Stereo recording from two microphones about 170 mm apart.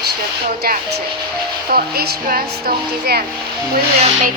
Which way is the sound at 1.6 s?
65° right (ahead or behind).